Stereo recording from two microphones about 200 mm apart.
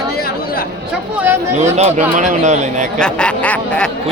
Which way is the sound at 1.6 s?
35° right (ahead or behind).